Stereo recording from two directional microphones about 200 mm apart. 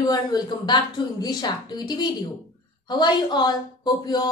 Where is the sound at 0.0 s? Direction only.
20° left (ahead or behind).